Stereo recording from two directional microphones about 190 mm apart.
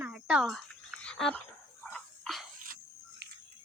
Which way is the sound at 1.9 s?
Centre (ahead or behind).